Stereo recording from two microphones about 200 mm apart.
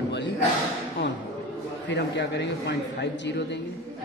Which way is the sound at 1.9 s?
60° left (ahead or behind).